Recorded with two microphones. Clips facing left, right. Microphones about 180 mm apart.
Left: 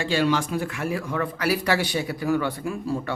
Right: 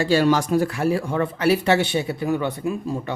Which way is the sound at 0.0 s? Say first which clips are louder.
Right 5 dB; 40° right (ahead or behind).